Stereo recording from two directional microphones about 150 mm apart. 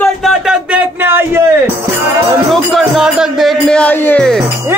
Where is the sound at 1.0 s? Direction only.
15° right (ahead or behind).